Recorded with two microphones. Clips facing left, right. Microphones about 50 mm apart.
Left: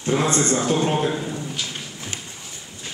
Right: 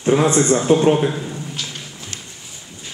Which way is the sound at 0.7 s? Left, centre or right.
Centre.